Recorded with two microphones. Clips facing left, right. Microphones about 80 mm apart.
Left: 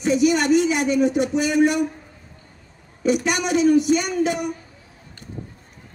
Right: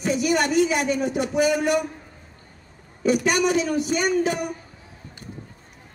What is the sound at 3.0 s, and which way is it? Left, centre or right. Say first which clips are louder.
Speech: right 1 dB; right.